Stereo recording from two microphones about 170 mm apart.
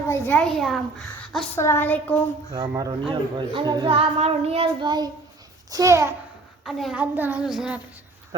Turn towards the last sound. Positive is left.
turn(degrees=-5)  # may be behind; listen again after turning